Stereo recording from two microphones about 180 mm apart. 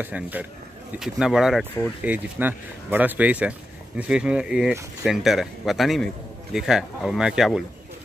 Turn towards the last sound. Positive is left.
turn(degrees=-5)  # may be behind; listen again after turning